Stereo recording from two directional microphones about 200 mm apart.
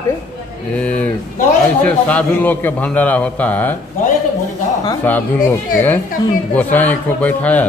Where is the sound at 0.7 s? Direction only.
5° left (ahead or behind).